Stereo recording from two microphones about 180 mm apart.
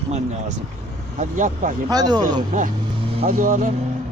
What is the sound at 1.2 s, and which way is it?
Speech, 45° right (ahead or behind).